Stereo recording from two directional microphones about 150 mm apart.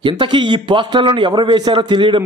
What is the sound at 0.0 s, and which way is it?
A man's voice, 35° right (ahead or behind).